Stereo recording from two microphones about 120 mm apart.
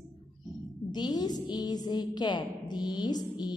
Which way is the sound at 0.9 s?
35° left (ahead or behind).